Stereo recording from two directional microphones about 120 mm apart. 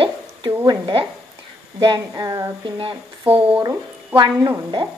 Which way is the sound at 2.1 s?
30° right (ahead or behind).